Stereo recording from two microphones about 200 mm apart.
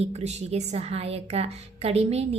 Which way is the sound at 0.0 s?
30° right (ahead or behind).